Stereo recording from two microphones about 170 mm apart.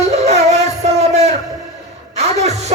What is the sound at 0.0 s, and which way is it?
Music, 40° right (ahead or behind).